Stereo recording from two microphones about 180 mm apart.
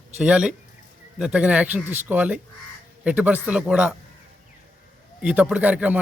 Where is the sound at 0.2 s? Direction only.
5° right (ahead or behind).